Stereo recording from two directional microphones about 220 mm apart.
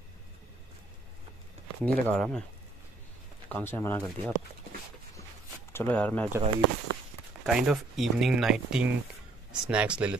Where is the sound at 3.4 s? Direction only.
10° left (ahead or behind).